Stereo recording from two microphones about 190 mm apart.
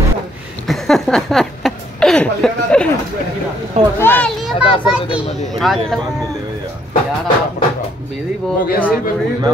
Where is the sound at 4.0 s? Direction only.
10° left (ahead or behind).